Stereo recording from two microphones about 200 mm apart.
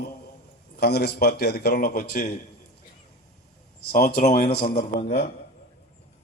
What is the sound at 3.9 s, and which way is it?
Speech, 50° left (ahead or behind).